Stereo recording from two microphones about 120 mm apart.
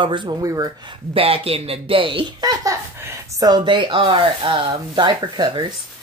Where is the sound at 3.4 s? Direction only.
40° right (ahead or behind).